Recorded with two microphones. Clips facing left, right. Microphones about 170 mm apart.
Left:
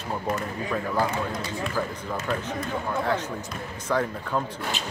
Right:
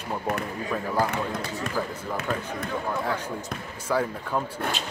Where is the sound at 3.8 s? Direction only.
10° right (ahead or behind).